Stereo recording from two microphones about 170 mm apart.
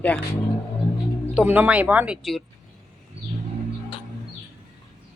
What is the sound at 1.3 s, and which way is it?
Speech, 10° right (ahead or behind).